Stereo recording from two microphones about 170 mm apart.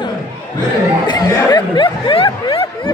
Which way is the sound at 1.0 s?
25° left (ahead or behind).